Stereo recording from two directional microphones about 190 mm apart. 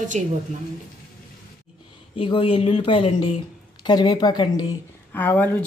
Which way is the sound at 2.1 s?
25° left (ahead or behind).